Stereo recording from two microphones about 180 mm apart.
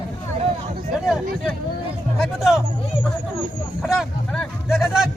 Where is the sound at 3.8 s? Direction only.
5° left (ahead or behind).